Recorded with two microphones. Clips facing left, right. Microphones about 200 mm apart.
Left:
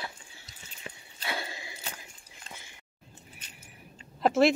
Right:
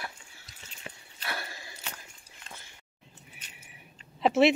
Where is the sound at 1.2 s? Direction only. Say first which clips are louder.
Left 2 dB; 20° left (ahead or behind).